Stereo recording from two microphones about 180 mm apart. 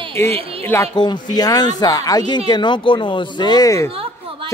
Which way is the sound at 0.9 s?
25° left (ahead or behind).